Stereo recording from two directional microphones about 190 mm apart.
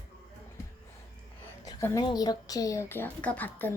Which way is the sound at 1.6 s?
20° left (ahead or behind).